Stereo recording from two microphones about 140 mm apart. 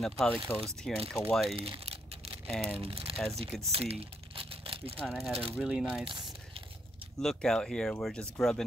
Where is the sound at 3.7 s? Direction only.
45° right (ahead or behind).